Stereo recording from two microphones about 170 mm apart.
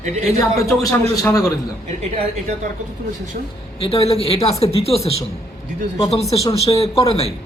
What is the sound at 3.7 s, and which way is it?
A woman's voice, 35° left (ahead or behind).